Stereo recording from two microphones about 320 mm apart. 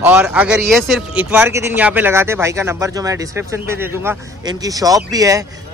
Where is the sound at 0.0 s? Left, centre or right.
Centre.